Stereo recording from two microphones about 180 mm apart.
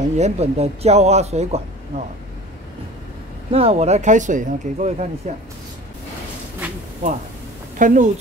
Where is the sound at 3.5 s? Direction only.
35° right (ahead or behind).